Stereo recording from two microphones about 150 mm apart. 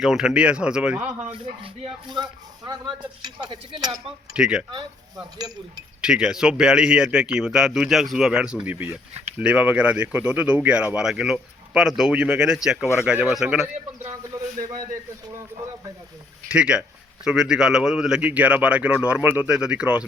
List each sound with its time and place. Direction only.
0.0 s speech: 5° right (ahead or behind)
1.0 s speech: 45° right (ahead or behind)
3.2 s a sound: 30° right (ahead or behind)
4.0 s speech: 5° right (ahead or behind)
4.7 s a sound: 30° right (ahead or behind)
6.0 s speech: 5° right (ahead or behind)
16.5 s speech: 5° right (ahead or behind)